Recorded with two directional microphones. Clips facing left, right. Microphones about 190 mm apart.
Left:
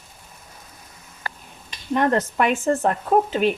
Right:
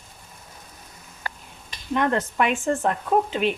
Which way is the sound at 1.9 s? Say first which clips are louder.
Left 2 dB; 40° left (ahead or behind).